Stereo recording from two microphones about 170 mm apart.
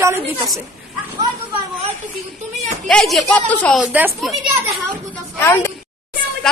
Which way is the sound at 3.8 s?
10° right (ahead or behind).